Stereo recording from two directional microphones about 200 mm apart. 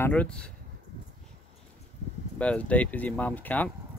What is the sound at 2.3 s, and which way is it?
Speech, 5° left (ahead or behind).